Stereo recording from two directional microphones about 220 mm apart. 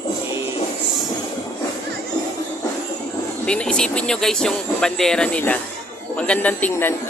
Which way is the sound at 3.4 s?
5° left (ahead or behind).